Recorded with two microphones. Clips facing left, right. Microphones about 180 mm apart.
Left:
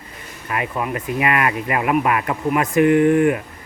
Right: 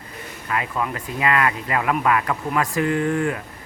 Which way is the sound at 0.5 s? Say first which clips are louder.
Left 2 dB; 20° left (ahead or behind).